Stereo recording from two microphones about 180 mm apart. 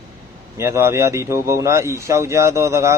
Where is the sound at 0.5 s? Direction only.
15° right (ahead or behind).